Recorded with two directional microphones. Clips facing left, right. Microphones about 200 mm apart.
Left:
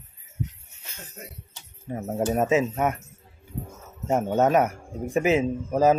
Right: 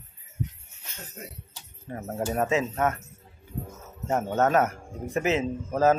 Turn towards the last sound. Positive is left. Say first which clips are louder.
# left 2 dB
turn(degrees=15)  # may be behind; listen again after turning